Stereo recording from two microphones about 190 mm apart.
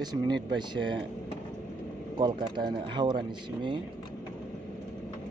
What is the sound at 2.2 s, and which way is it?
Speech, 25° right (ahead or behind).